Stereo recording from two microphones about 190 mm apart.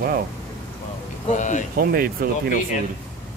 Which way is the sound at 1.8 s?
50° right (ahead or behind).